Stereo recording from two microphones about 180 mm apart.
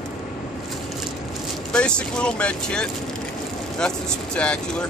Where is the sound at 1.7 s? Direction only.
5° left (ahead or behind).